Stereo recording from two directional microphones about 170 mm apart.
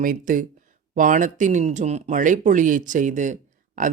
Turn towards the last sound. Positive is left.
turn(degrees=-50)  # may be behind; listen again after turning